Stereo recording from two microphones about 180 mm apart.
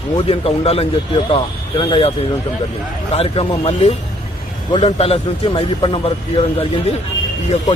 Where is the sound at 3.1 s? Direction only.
35° left (ahead or behind).